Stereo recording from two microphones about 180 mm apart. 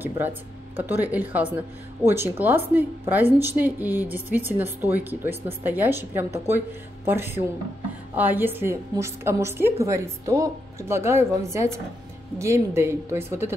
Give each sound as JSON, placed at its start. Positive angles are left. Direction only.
{"t": 0.7, "sound": "a woman's voice", "side_deg": -10}